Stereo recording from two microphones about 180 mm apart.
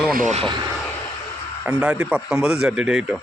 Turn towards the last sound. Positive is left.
turn(degrees=-5)  # may be behind; listen again after turning